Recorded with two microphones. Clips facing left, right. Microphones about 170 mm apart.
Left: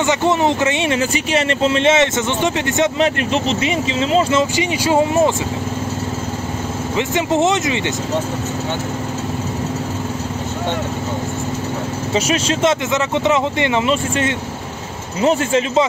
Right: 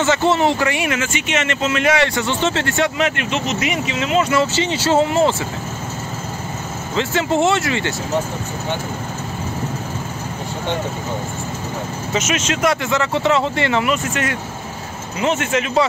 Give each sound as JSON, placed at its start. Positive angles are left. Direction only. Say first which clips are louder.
{"t": 0.0, "sound": "speech", "louder": "even", "side_deg": 15}
{"t": 3.0, "sound": "speech", "louder": "left 3 dB", "side_deg": 35}
{"t": 4.4, "sound": "speech", "louder": "left 1 dB", "side_deg": 15}
{"t": 7.0, "sound": "speech", "louder": "left 1 dB", "side_deg": 20}
{"t": 12.1, "sound": "speech", "louder": "left 3 dB", "side_deg": 35}
{"t": 12.9, "sound": "speech", "louder": "left 1 dB", "side_deg": 20}
{"t": 15.1, "sound": "speech", "louder": "left 4 dB", "side_deg": 30}